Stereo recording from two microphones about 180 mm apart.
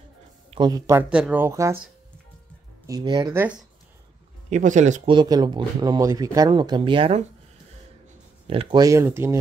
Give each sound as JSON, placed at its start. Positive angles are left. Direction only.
{"t": 0.5, "sound": "speech", "side_deg": -25}
{"t": 2.9, "sound": "speech", "side_deg": -25}
{"t": 4.5, "sound": "speech", "side_deg": -40}
{"t": 5.0, "sound": "speech", "side_deg": -25}
{"t": 8.5, "sound": "speech", "side_deg": -25}